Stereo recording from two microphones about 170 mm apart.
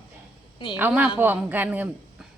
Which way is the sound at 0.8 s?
10° right (ahead or behind).